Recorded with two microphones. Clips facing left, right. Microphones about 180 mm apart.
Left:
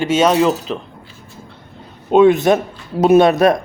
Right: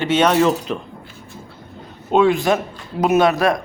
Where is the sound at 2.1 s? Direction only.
20° left (ahead or behind).